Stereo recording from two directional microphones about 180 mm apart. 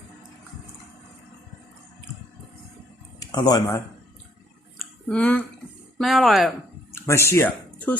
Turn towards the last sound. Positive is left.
turn(degrees=10)  # may be behind; listen again after turning